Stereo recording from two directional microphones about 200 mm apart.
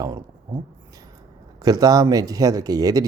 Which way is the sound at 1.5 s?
20° right (ahead or behind).